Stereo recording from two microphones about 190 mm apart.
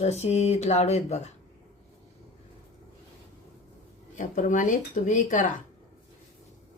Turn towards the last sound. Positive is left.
turn(degrees=45)  # may be behind; listen again after turning